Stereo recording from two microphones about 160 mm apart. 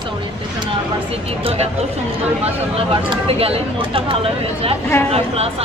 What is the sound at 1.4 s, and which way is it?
Speech, 40° right (ahead or behind).